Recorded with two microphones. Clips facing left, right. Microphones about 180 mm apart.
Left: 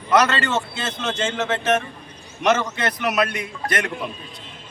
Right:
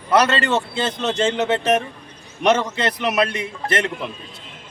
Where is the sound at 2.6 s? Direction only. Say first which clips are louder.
Right 2 dB; 30° right (ahead or behind).